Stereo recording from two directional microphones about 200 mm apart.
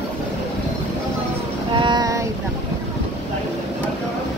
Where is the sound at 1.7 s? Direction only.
25° right (ahead or behind).